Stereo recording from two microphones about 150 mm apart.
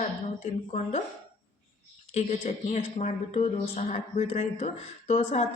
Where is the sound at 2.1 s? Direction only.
50° left (ahead or behind).